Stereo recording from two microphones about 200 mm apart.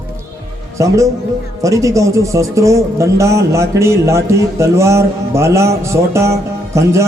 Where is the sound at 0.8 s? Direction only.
15° right (ahead or behind).